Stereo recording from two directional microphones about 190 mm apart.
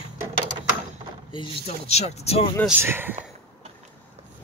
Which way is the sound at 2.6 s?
10° right (ahead or behind).